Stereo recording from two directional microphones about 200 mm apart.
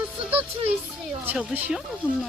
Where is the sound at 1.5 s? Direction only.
10° right (ahead or behind).